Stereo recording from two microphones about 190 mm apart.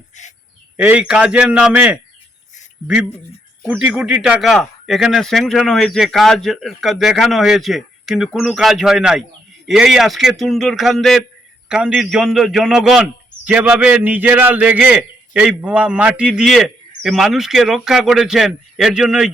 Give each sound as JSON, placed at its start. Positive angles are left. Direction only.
{"t": 0.2, "sound": "speech", "side_deg": 40}
{"t": 0.8, "sound": "a man's voice", "side_deg": -5}
{"t": 3.6, "sound": "a man's voice", "side_deg": -5}